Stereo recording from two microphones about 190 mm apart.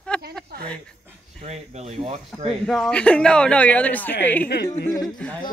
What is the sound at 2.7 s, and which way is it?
Speech, 5° left (ahead or behind).